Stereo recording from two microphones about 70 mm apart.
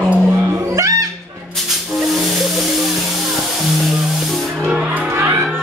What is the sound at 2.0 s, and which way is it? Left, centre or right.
Music, centre.